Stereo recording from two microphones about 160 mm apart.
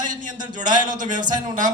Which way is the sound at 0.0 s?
55° right (ahead or behind).